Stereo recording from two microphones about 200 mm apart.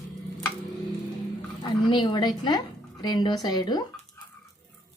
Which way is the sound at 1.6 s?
25° left (ahead or behind).